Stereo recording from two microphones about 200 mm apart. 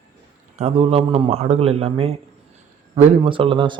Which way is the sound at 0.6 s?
30° right (ahead or behind).